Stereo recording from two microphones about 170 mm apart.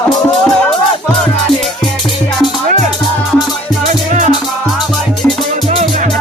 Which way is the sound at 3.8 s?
45° right (ahead or behind).